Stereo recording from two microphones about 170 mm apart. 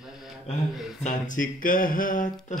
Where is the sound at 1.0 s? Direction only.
50° left (ahead or behind).